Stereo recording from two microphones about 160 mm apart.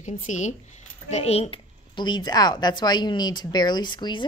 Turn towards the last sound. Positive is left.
turn(degrees=30)  # may be behind; listen again after turning